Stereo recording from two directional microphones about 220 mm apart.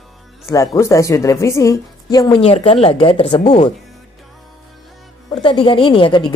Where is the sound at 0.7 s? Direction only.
15° left (ahead or behind).